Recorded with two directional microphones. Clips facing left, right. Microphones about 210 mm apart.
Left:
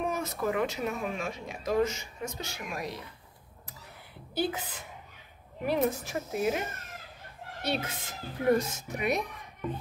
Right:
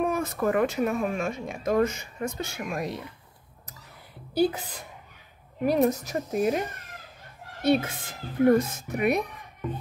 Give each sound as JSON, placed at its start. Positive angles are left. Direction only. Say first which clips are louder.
{"t": 0.0, "sound": "a sound", "louder": "right 6 dB", "side_deg": -55}
{"t": 0.4, "sound": "speech", "louder": "right 6 dB", "side_deg": -50}
{"t": 4.3, "sound": "a woman's voice", "louder": "right 7 dB", "side_deg": -40}
{"t": 7.6, "sound": "speech", "louder": "right 9 dB", "side_deg": -50}